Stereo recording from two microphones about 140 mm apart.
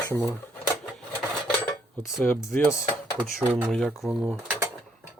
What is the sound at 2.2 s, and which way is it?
Speech, 15° left (ahead or behind).